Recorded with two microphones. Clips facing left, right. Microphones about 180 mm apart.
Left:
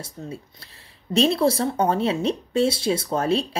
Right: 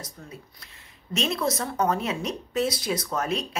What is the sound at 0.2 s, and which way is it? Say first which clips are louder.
Speech: left 8 dB; 30° left (ahead or behind).